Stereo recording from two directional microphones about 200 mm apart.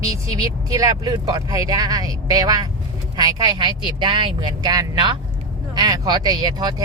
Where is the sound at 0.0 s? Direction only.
15° right (ahead or behind).